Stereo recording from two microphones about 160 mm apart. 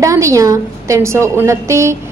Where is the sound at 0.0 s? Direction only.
20° right (ahead or behind).